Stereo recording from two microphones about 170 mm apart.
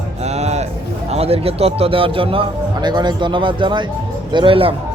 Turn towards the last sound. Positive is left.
turn(degrees=-30)  # may be behind; listen again after turning